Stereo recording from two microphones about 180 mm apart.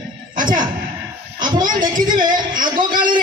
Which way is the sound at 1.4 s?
45° right (ahead or behind).